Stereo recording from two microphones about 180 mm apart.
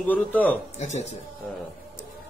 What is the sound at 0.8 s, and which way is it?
Speech, 40° left (ahead or behind).